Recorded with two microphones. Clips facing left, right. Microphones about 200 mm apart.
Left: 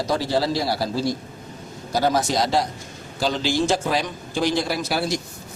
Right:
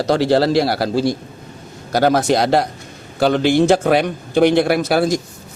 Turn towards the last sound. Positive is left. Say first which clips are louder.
# right 8 dB
turn(degrees=-50)  # may be behind; listen again after turning